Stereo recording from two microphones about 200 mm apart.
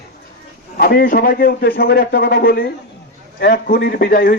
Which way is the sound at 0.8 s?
50° left (ahead or behind).